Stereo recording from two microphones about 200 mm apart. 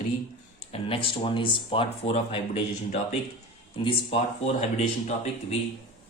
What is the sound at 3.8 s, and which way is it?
Speech, 25° left (ahead or behind).